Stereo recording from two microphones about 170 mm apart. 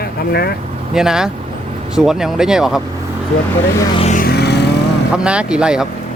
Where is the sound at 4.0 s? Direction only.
40° left (ahead or behind).